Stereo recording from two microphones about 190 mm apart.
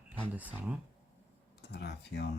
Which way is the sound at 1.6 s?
60° left (ahead or behind).